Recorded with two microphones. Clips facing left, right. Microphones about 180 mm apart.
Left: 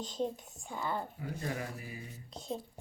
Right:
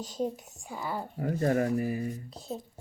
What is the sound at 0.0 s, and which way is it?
Speech, 10° right (ahead or behind).